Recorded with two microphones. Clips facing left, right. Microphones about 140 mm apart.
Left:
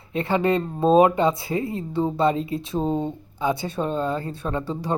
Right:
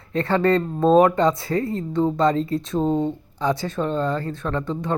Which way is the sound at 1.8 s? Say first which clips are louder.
Right 2 dB; 10° left (ahead or behind).